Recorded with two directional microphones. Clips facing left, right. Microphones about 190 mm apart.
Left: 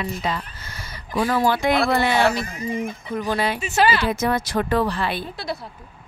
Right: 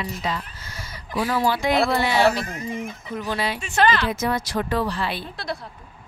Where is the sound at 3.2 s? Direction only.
50° left (ahead or behind).